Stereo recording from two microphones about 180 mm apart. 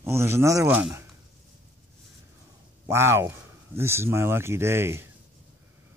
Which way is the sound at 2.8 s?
15° right (ahead or behind).